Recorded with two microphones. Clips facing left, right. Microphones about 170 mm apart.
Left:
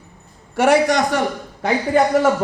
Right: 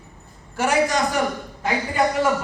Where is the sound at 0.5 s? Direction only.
65° left (ahead or behind).